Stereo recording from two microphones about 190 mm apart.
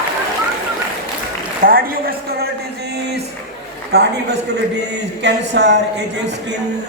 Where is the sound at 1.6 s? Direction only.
50° right (ahead or behind).